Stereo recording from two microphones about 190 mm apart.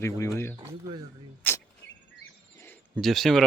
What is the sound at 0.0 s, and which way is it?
Speech, 15° left (ahead or behind).